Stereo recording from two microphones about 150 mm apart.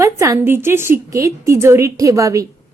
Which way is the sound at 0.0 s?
20° right (ahead or behind).